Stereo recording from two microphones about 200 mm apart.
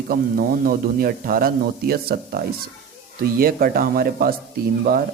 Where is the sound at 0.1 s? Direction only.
45° right (ahead or behind).